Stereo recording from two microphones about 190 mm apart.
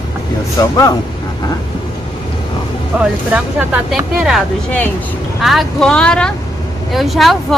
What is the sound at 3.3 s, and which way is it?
A woman's voice, 5° right (ahead or behind).